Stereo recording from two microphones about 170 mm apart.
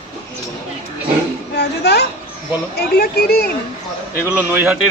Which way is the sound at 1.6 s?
75° left (ahead or behind).